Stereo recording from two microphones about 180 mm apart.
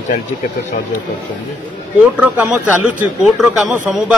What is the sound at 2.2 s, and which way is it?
A man's voice, 10° right (ahead or behind).